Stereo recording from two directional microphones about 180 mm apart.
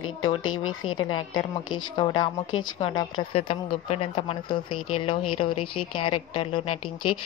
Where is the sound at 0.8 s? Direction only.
30° left (ahead or behind).